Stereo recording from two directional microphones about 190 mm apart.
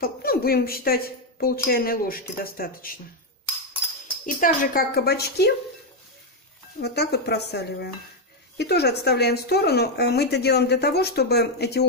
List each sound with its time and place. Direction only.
0.0 s a woman's voice: 50° left (ahead or behind)
4.4 s a woman's voice: 45° left (ahead or behind)
6.8 s speech: 60° left (ahead or behind)